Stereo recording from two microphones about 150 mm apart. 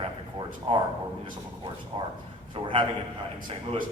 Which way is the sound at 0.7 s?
40° right (ahead or behind).